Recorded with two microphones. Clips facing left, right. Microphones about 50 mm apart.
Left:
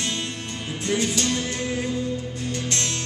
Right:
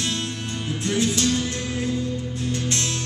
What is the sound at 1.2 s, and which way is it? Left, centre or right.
Music, centre.